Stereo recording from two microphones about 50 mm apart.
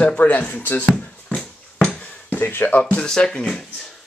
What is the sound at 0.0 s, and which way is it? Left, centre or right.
Speech, left.